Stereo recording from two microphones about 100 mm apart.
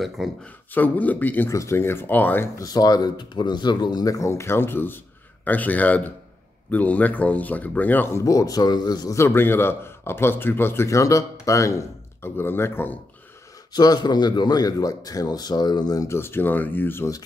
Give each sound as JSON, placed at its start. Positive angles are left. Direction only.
{"t": 0.0, "sound": "speech", "side_deg": 0}
{"t": 0.7, "sound": "speech", "side_deg": 15}
{"t": 1.5, "sound": "speech", "side_deg": 30}
{"t": 2.6, "sound": "speech", "side_deg": 40}
{"t": 9.1, "sound": "speech", "side_deg": 25}
{"t": 13.7, "sound": "speech", "side_deg": 45}